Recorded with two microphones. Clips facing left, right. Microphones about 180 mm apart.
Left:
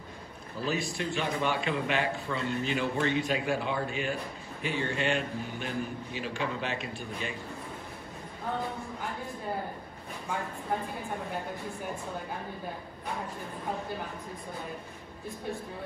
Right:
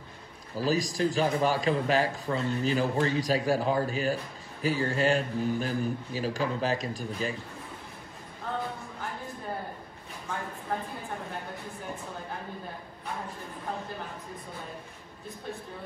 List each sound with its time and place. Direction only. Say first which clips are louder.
0.7 s a man's voice: right 5 dB; 35° right (ahead or behind)